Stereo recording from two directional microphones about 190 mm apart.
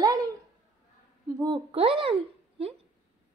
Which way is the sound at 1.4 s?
25° right (ahead or behind).